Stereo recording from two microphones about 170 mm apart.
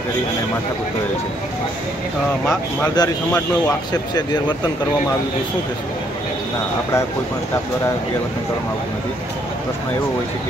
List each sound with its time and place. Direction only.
2.8 s speech: 20° left (ahead or behind)